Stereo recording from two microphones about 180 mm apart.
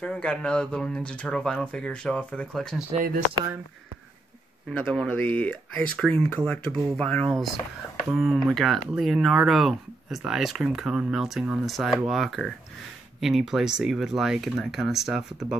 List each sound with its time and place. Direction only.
0.0 s speech: 5° left (ahead or behind)
4.6 s speech: 5° left (ahead or behind)